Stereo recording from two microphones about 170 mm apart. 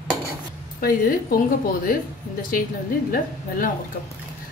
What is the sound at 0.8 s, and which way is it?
A woman's voice, 55° left (ahead or behind).